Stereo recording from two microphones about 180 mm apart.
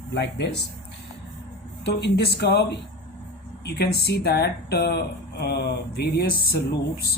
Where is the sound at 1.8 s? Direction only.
65° left (ahead or behind).